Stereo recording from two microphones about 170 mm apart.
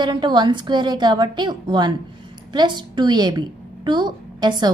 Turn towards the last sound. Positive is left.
turn(degrees=-25)  # may be behind; listen again after turning